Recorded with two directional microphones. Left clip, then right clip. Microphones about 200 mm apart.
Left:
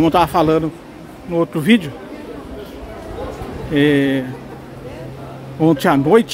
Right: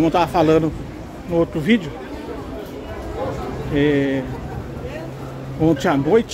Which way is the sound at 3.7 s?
25° left (ahead or behind).